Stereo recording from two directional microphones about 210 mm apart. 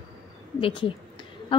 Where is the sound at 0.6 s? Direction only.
25° left (ahead or behind).